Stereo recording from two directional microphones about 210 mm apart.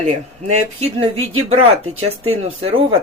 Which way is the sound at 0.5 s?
30° right (ahead or behind).